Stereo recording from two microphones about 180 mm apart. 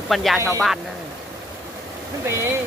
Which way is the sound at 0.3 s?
15° right (ahead or behind).